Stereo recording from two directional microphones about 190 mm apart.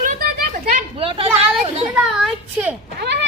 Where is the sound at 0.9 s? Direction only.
30° right (ahead or behind).